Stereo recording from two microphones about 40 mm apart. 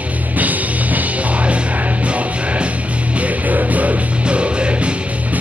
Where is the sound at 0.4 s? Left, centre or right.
Right.